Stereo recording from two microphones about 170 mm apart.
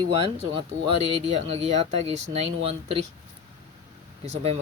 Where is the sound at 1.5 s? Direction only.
35° right (ahead or behind).